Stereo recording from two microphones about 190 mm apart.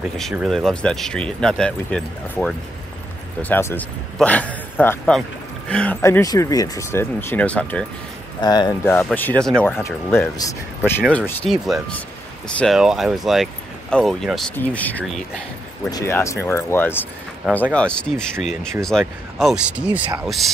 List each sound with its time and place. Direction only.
0.2 s a man's voice: centre (ahead or behind)
8.4 s speech: 20° left (ahead or behind)
8.8 s speech: 10° left (ahead or behind)
15.9 s speech: 15° left (ahead or behind); by 20.0 s 5° right (ahead or behind)